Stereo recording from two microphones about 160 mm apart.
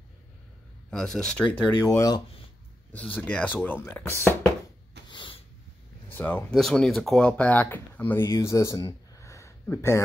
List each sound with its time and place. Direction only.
0.8 s speech: 5° left (ahead or behind)
2.0 s speech: 25° left (ahead or behind)
2.9 s speech: 10° left (ahead or behind)
5.0 s a sound: 30° left (ahead or behind)
6.1 s speech: 10° left (ahead or behind)